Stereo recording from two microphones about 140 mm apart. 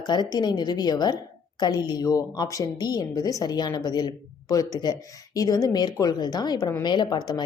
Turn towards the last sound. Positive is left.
turn(degrees=30)  # may be behind; listen again after turning